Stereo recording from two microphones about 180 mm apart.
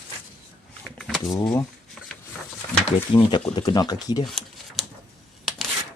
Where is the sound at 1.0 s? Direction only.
Centre (ahead or behind).